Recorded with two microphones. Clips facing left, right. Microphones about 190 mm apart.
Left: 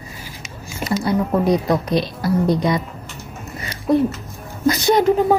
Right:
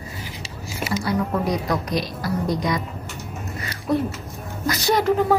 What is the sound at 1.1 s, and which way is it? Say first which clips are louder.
Speech: left 6 dB; 25° left (ahead or behind).